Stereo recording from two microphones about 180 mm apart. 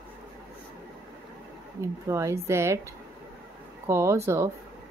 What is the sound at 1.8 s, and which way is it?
Speech, 15° right (ahead or behind).